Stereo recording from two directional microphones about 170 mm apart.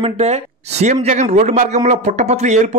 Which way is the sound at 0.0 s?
40° right (ahead or behind).